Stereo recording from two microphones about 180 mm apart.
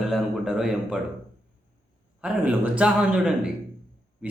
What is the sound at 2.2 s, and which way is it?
A man's voice, 10° right (ahead or behind).